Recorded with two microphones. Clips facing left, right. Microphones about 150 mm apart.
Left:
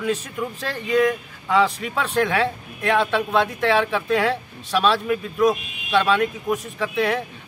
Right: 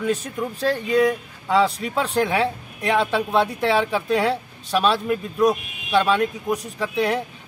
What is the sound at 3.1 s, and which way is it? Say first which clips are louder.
Speech: even; 10° right (ahead or behind).